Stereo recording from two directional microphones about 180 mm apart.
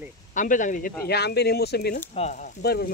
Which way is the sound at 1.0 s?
65° left (ahead or behind).